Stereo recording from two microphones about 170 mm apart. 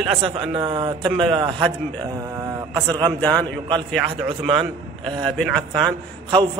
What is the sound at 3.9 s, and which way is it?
A man's voice, 5° right (ahead or behind).